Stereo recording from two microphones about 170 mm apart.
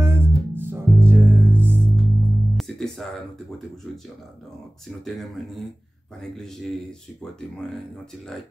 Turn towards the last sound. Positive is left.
turn(degrees=5)  # may be behind; listen again after turning